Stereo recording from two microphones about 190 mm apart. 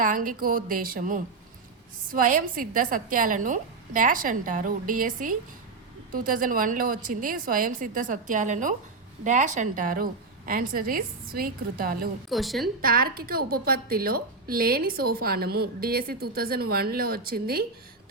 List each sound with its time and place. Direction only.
0.0 s a woman's voice: 45° right (ahead or behind)
12.3 s a woman's voice: centre (ahead or behind)
12.8 s a woman's voice: 50° right (ahead or behind)